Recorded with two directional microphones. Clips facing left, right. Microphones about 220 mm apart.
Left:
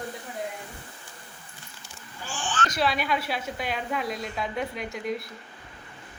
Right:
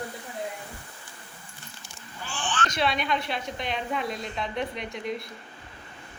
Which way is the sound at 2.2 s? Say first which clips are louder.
Even; 40° left (ahead or behind).